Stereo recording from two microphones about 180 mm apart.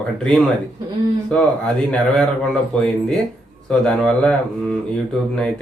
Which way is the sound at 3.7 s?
5° left (ahead or behind).